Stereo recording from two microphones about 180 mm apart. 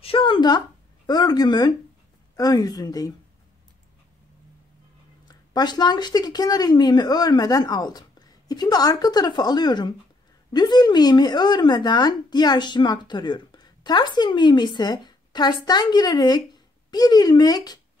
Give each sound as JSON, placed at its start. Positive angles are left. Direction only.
{"t": 0.0, "sound": "speech", "side_deg": 30}
{"t": 5.3, "sound": "speech", "side_deg": 20}